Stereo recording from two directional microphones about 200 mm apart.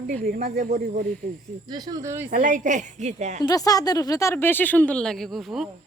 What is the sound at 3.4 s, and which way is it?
Speech, 20° left (ahead or behind).